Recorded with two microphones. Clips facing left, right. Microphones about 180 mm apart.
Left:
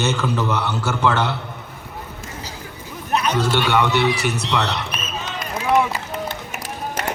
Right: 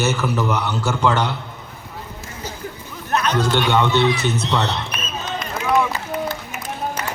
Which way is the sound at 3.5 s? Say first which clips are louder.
Right 2 dB; 15° right (ahead or behind).